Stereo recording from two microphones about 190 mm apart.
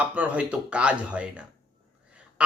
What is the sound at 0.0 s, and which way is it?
A man's voice, 5° right (ahead or behind).